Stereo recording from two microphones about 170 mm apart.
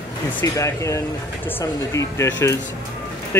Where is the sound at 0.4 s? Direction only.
15° left (ahead or behind).